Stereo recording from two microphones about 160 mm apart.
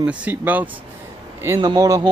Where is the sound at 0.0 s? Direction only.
10° right (ahead or behind).